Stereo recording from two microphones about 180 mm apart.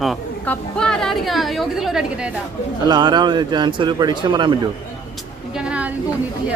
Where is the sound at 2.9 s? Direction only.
25° right (ahead or behind).